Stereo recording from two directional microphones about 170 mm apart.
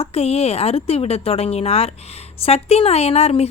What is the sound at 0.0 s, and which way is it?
A woman's voice, 35° left (ahead or behind).